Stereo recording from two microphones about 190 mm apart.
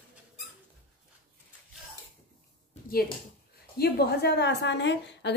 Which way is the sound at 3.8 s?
55° left (ahead or behind).